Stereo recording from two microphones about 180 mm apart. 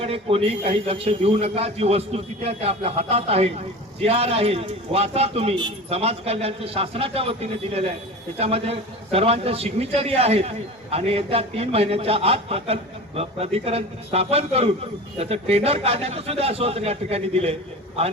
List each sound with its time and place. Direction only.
0.0 s a man's voice: 35° right (ahead or behind)